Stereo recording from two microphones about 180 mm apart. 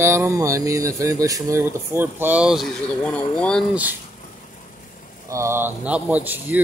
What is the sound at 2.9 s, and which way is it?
Speech, 5° left (ahead or behind).